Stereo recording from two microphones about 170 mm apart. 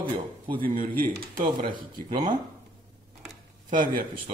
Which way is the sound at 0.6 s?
55° right (ahead or behind).